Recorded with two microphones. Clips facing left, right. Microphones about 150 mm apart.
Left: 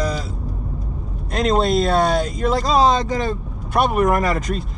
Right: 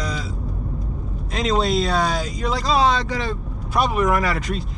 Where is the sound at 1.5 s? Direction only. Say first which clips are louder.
Left 3 dB; 50° left (ahead or behind).